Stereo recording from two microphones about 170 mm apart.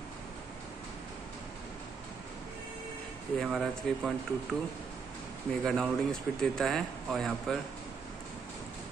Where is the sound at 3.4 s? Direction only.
Centre (ahead or behind).